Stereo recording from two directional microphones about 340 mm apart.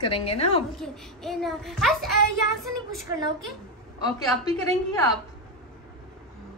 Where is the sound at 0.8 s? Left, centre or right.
Centre.